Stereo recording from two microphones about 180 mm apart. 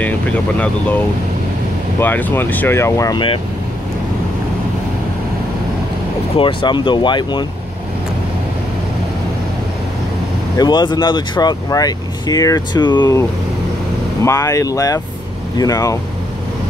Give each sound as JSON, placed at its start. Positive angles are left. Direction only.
{"t": 2.0, "sound": "speech", "side_deg": 10}
{"t": 6.3, "sound": "speech", "side_deg": 25}
{"t": 10.6, "sound": "speech", "side_deg": 25}
{"t": 14.2, "sound": "speech", "side_deg": 20}